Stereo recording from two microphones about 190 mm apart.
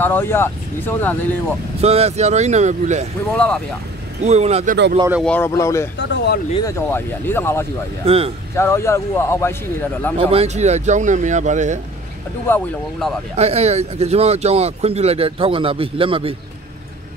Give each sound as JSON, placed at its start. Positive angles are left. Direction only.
{"t": 0.0, "sound": "speech", "side_deg": 10}
{"t": 1.8, "sound": "speech", "side_deg": -35}
{"t": 3.3, "sound": "speech", "side_deg": 5}
{"t": 4.2, "sound": "speech", "side_deg": -35}
{"t": 5.2, "sound": "speech", "side_deg": 10}
{"t": 5.9, "sound": "speech", "side_deg": 60}
{"t": 6.6, "sound": "speech", "side_deg": 15}
{"t": 8.0, "sound": "speech", "side_deg": -30}
{"t": 8.5, "sound": "speech", "side_deg": 15}
{"t": 10.1, "sound": "speech", "side_deg": -30}
{"t": 12.4, "sound": "speech", "side_deg": 10}
{"t": 13.4, "sound": "speech", "side_deg": -35}